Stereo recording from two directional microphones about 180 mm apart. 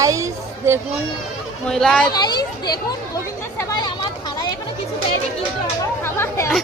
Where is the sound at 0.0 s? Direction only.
15° right (ahead or behind).